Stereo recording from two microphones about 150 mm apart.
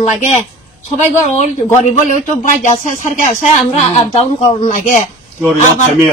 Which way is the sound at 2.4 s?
55° left (ahead or behind).